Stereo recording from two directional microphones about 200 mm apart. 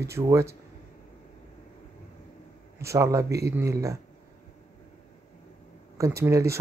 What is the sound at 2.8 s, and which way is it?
Speech, 15° right (ahead or behind).